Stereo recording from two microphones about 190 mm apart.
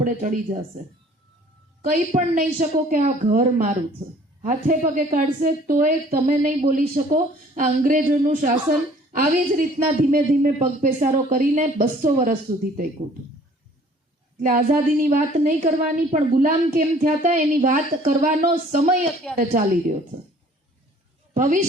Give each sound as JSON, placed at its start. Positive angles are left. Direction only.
{"t": 0.0, "sound": "a woman's voice", "side_deg": -40}
{"t": 14.3, "sound": "a woman's voice", "side_deg": -45}